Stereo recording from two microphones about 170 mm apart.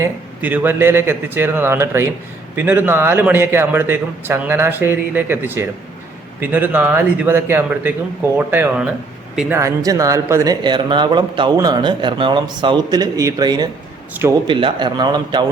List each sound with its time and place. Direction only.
0.0 s a man's voice: 10° right (ahead or behind)
9.6 s a man's voice: 20° right (ahead or behind)
14.4 s speech: 30° right (ahead or behind)